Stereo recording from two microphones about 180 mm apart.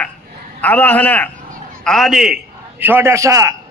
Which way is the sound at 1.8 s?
Centre (ahead or behind).